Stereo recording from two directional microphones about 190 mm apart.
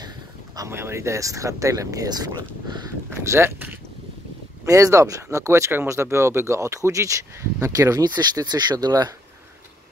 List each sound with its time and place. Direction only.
0.6 s speech: 15° right (ahead or behind)
4.6 s speech: 15° right (ahead or behind)